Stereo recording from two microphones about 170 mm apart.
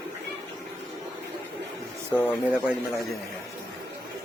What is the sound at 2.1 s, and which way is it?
Speech, 10° left (ahead or behind).